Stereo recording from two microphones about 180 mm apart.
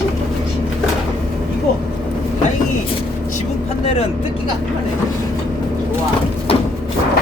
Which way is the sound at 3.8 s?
35° left (ahead or behind).